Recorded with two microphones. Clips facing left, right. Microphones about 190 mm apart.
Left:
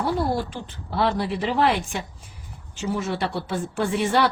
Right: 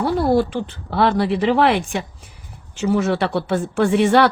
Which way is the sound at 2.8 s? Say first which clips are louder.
Right 7 dB; 75° right (ahead or behind).